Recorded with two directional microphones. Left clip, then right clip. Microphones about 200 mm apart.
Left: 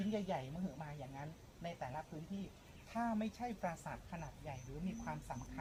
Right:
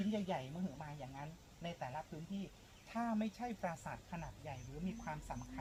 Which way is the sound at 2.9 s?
10° left (ahead or behind).